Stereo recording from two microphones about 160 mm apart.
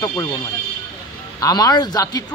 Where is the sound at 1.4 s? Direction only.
25° left (ahead or behind).